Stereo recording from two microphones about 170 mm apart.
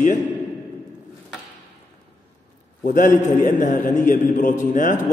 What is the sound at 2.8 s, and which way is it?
A man's voice, 50° left (ahead or behind).